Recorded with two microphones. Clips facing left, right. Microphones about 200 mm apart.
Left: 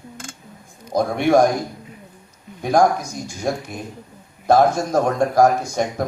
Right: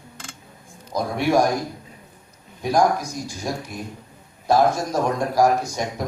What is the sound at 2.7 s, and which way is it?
A man's voice, 50° left (ahead or behind).